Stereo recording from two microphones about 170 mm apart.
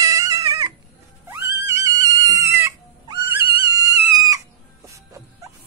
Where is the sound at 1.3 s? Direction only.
20° right (ahead or behind).